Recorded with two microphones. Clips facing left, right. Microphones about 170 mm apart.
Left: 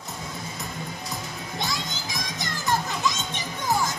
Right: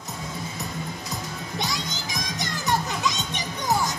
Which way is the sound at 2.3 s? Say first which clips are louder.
Right 1 dB; 20° right (ahead or behind).